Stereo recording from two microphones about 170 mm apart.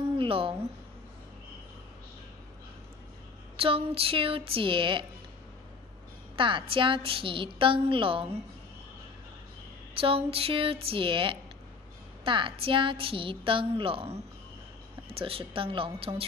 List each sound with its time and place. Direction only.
0.2 s speech: 30° right (ahead or behind)
3.5 s a woman's voice: 35° right (ahead or behind)
6.3 s a woman's voice: 30° right (ahead or behind)
9.9 s a woman's voice: 35° right (ahead or behind)